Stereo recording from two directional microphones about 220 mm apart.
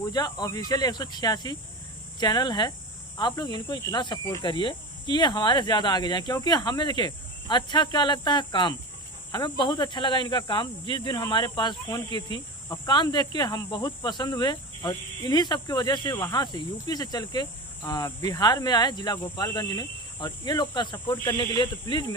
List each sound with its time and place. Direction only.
0.1 s speech: 20° left (ahead or behind)